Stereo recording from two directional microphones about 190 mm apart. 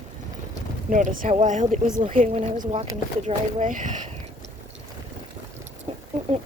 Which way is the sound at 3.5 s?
40° right (ahead or behind).